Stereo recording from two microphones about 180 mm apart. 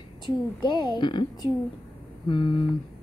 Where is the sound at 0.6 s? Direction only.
25° left (ahead or behind).